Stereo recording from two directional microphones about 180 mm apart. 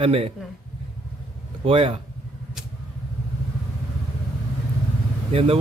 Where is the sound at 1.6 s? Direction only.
30° right (ahead or behind).